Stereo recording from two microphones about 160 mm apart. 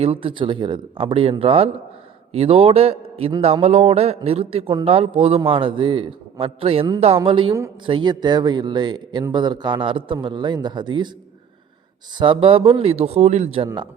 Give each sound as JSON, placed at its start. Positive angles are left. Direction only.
{"t": 0.0, "sound": "a man's voice", "side_deg": -35}
{"t": 12.1, "sound": "a man's voice", "side_deg": -30}